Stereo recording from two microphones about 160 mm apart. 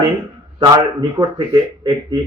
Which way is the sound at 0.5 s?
25° right (ahead or behind).